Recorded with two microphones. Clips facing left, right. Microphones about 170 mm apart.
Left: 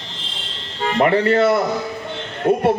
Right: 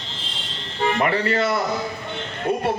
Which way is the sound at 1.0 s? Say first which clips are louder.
Left 9 dB; 55° left (ahead or behind).